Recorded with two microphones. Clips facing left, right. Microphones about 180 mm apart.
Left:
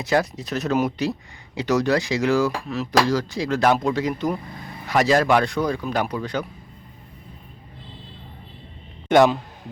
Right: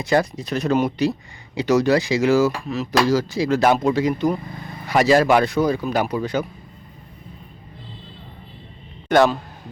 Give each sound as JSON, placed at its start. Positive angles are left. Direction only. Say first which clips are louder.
{"t": 0.0, "sound": "speech", "louder": "right 2 dB", "side_deg": 0}
{"t": 9.1, "sound": "a man's voice", "louder": "even", "side_deg": 15}